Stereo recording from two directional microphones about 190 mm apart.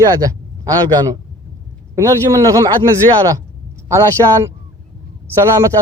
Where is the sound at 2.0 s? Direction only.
20° right (ahead or behind).